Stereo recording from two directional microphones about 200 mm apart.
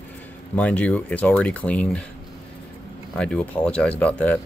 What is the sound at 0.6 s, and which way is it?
Speech, 5° left (ahead or behind).